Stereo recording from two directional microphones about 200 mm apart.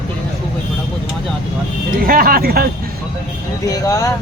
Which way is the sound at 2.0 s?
45° right (ahead or behind).